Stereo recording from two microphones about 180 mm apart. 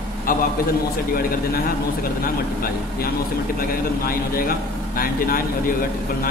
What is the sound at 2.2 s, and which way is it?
Speech, 55° left (ahead or behind).